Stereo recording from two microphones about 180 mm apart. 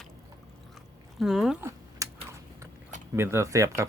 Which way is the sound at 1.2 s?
Centre (ahead or behind).